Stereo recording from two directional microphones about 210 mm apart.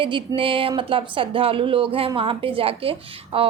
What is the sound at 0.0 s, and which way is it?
Speech, 25° right (ahead or behind).